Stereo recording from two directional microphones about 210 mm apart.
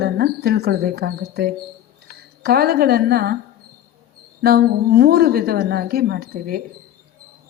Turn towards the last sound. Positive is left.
turn(degrees=-45)  # may be behind; listen again after turning